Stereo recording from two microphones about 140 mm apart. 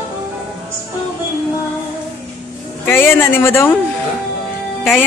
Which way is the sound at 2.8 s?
15° left (ahead or behind).